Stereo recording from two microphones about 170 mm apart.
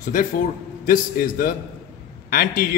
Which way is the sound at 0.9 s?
55° left (ahead or behind).